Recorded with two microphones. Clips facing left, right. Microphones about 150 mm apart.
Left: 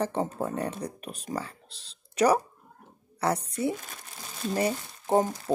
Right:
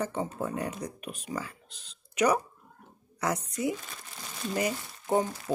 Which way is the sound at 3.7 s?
50° left (ahead or behind).